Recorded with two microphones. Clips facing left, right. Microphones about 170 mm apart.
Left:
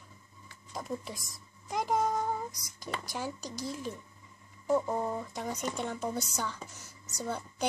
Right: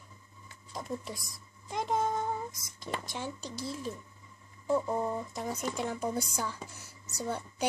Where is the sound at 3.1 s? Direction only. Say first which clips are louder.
Left 1 dB; 5° left (ahead or behind).